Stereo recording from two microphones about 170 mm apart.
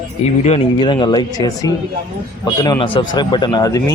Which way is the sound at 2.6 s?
25° left (ahead or behind).